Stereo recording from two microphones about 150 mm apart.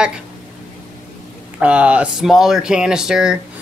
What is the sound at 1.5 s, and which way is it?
Speech, 10° right (ahead or behind).